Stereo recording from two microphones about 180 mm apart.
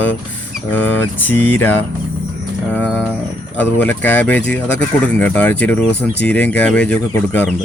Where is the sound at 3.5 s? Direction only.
10° left (ahead or behind).